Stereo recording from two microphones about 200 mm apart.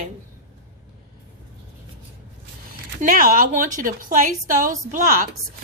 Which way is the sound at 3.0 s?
45° right (ahead or behind).